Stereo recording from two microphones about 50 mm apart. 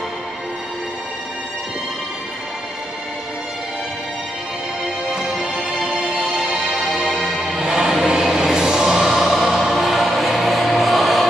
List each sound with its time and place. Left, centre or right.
4.8 s music: centre
5.8 s music: right
6.8 s music: centre